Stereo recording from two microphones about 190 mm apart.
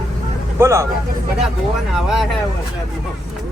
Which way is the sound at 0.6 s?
15° right (ahead or behind).